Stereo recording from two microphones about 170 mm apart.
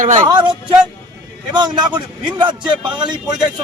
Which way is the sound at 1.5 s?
25° right (ahead or behind).